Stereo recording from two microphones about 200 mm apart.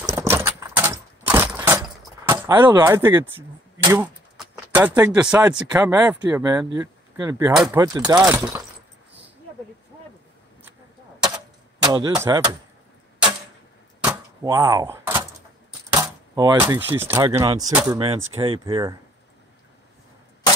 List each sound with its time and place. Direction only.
0.1 s keys jangling: 15° right (ahead or behind)
3.8 s speech: 15° right (ahead or behind)
4.4 s a sound: 10° right (ahead or behind)
5.5 s speech: 5° right (ahead or behind)
11.8 s speech: 20° right (ahead or behind)
14.0 s door: 20° right (ahead or behind)
15.9 s speech: 15° right (ahead or behind)
17.2 s speech: 25° right (ahead or behind)